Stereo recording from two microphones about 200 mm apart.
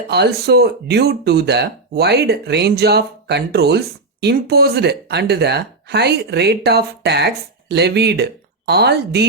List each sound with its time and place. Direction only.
0.1 s speech: 55° right (ahead or behind)